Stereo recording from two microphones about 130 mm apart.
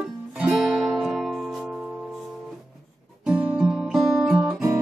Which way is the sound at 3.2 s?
5° right (ahead or behind).